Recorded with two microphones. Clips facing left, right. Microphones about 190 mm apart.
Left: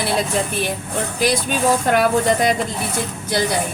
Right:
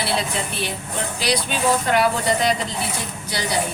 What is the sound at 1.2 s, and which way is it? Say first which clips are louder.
Speech: left 3 dB; 50° left (ahead or behind).